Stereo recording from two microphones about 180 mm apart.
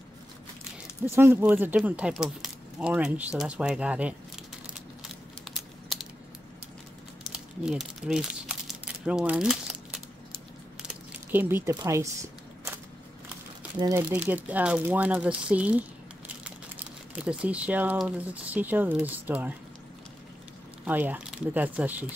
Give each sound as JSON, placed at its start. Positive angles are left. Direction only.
{"t": 1.0, "sound": "speech", "side_deg": -15}
{"t": 5.0, "sound": "a sound", "side_deg": 0}
{"t": 7.3, "sound": "a sound", "side_deg": -5}
{"t": 11.7, "sound": "speech", "side_deg": -20}
{"t": 13.7, "sound": "speech", "side_deg": -20}
{"t": 17.1, "sound": "speech", "side_deg": -5}
{"t": 20.8, "sound": "speech", "side_deg": -10}